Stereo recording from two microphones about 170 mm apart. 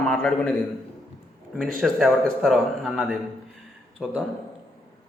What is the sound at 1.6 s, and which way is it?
A man's voice, centre (ahead or behind).